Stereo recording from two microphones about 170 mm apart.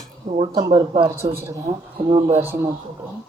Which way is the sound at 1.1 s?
15° right (ahead or behind).